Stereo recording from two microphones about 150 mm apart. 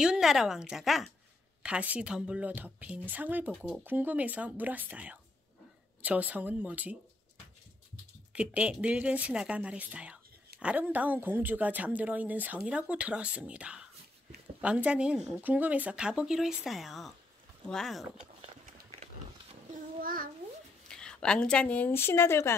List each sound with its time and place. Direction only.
0.0 s a woman's voice: 5° right (ahead or behind)
8.3 s a woman's voice: 10° right (ahead or behind)
20.0 s child singing: 70° right (ahead or behind)
20.9 s a woman's voice: 5° left (ahead or behind)